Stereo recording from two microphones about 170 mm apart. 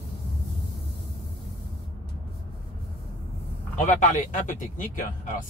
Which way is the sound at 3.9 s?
45° left (ahead or behind).